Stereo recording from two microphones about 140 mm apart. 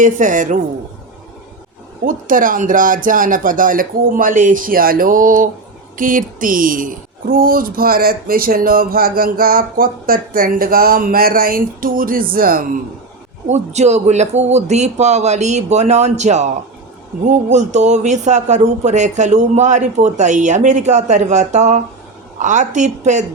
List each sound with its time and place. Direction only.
0.0 s speech: 65° right (ahead or behind)
2.0 s speech: 75° right (ahead or behind); by 12.6 s 90° right
13.5 s a man's voice: 55° right (ahead or behind)